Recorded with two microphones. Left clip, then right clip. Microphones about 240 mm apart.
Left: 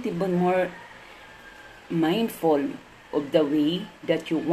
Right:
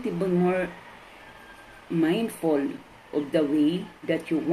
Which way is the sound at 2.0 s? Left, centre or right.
Left.